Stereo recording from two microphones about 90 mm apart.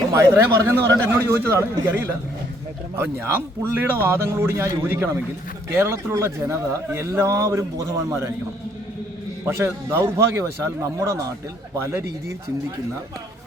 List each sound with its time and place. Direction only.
0.1 s a man's voice: 30° right (ahead or behind)
3.6 s a man's voice: 25° right (ahead or behind)
9.6 s a man's voice: 30° right (ahead or behind)